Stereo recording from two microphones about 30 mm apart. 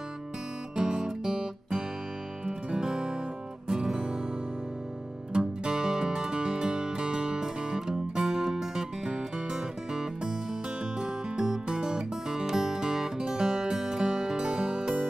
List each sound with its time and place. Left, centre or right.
0.7 s music: right
5.3 s music: right